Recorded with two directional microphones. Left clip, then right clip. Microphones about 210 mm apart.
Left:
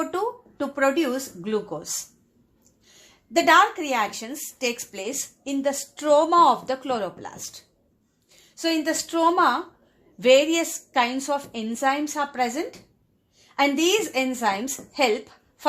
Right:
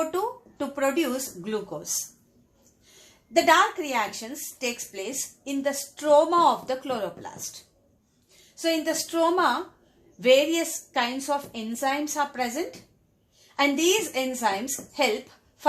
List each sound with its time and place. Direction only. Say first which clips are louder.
0.1 s speech: left 2 dB; 35° left (ahead or behind)
3.3 s a woman's voice: left 2 dB; 45° left (ahead or behind)
8.5 s a woman's voice: left 1 dB; 45° left (ahead or behind)